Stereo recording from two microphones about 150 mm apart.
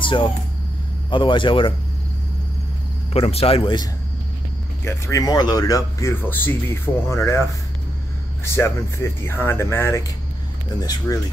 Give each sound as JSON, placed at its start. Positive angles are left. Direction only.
{"t": 0.0, "sound": "speech", "side_deg": 35}
{"t": 3.1, "sound": "speech", "side_deg": 40}
{"t": 4.8, "sound": "speech", "side_deg": 20}
{"t": 8.5, "sound": "speech", "side_deg": 15}